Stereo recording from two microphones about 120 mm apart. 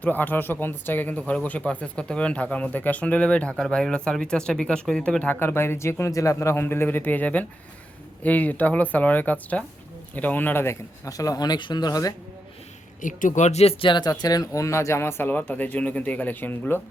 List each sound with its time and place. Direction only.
0.0 s speech: 15° left (ahead or behind); by 12.1 s 30° left (ahead or behind)
13.0 s speech: 90° left; by 16.8 s 15° left (ahead or behind)